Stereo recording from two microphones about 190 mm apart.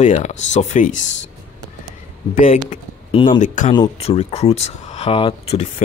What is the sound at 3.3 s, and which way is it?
Speech, 40° left (ahead or behind).